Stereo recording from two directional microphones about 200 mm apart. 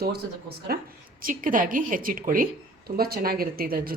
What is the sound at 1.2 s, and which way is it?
A woman's voice, 45° right (ahead or behind).